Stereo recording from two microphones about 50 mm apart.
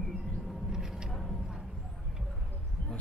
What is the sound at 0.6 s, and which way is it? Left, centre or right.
Vehicle, centre.